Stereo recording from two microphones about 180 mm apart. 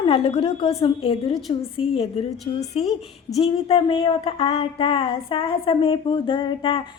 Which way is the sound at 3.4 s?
30° left (ahead or behind).